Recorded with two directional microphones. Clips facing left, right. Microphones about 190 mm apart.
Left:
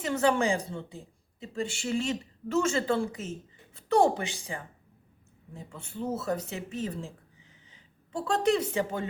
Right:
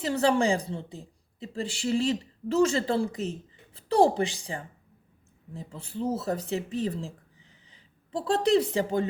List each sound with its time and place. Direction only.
0.0 s a woman's voice: 35° right (ahead or behind)